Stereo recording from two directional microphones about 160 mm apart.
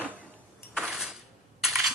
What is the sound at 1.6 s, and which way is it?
Coin, centre (ahead or behind).